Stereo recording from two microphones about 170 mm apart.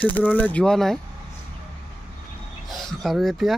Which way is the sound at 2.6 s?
Centre (ahead or behind).